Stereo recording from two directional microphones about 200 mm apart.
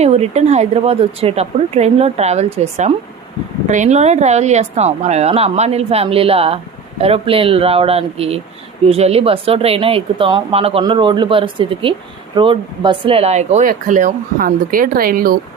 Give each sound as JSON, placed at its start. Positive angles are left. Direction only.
{"t": 0.0, "sound": "a woman's voice", "side_deg": -35}